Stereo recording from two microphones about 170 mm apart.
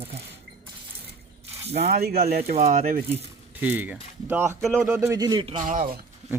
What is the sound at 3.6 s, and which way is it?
A man's voice, 10° right (ahead or behind).